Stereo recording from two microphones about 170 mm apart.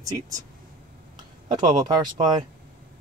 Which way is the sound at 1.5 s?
25° right (ahead or behind).